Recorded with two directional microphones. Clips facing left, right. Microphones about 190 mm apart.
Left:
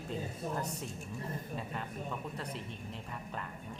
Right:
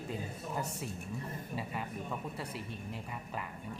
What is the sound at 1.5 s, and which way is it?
A woman's voice, 5° right (ahead or behind).